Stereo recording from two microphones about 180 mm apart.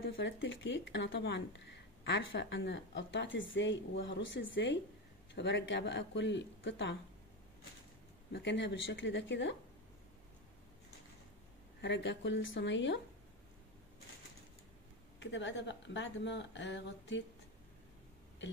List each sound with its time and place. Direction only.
0.1 s speech: 90° left
5.3 s speech: 75° left (ahead or behind)
8.3 s speech: 75° left (ahead or behind)
11.8 s speech: 75° left (ahead or behind)
15.1 s speech: 90° left